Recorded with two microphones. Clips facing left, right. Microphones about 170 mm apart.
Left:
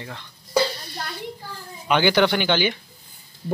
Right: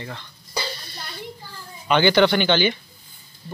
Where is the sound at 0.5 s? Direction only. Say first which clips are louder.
Left 9 dB; 65° left (ahead or behind).